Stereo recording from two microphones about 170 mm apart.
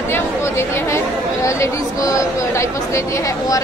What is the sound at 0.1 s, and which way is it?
Speech, 15° left (ahead or behind).